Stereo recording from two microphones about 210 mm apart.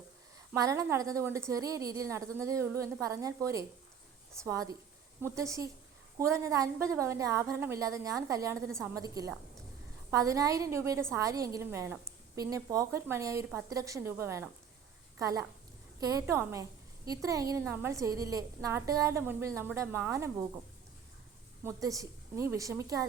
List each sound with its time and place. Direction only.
0.5 s a woman's voice: 15° right (ahead or behind)
21.6 s a woman's voice: 15° right (ahead or behind)